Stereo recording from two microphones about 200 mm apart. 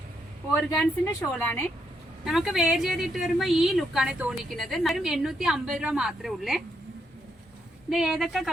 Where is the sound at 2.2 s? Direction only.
Centre (ahead or behind).